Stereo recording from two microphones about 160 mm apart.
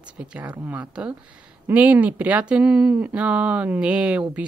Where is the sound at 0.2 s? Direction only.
5° right (ahead or behind).